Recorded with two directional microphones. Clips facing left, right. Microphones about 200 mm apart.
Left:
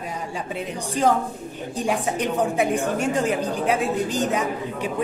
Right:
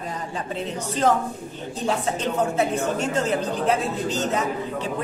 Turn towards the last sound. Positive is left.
turn(degrees=10)  # may be behind; listen again after turning